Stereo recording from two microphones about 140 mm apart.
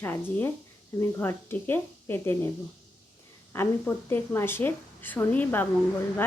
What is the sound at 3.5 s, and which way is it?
A woman's voice, 15° left (ahead or behind).